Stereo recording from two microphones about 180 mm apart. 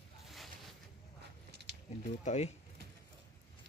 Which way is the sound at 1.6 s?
70° right (ahead or behind).